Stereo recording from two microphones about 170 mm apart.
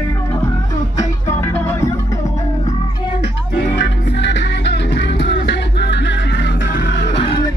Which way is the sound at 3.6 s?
90° left.